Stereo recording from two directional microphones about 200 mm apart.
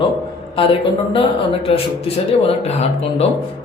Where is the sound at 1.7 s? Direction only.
30° left (ahead or behind).